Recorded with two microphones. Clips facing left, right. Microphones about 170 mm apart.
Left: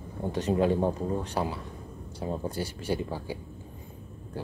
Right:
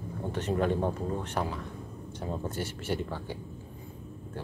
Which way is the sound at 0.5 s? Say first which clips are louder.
Left 3 dB; 15° left (ahead or behind).